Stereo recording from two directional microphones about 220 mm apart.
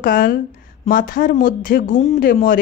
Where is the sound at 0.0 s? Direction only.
40° left (ahead or behind).